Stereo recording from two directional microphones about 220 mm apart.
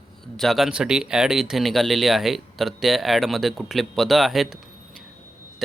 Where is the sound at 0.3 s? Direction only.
Centre (ahead or behind).